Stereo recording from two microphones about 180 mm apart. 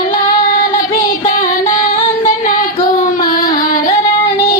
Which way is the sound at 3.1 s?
50° left (ahead or behind).